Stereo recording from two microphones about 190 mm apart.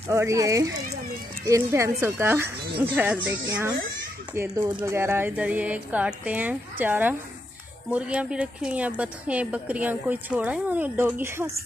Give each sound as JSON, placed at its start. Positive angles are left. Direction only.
{"t": 0.1, "sound": "a woman's voice", "side_deg": -15}